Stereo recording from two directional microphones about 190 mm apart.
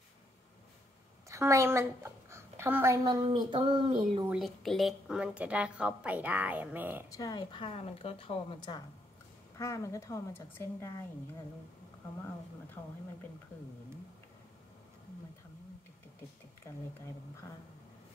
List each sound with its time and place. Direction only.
1.3 s a woman's voice: 15° right (ahead or behind)
4.2 s a woman's voice: 5° right (ahead or behind)
7.1 s a woman's voice: 20° left (ahead or behind)
12.8 s a woman's voice: 15° left (ahead or behind)
16.6 s speech: 15° left (ahead or behind)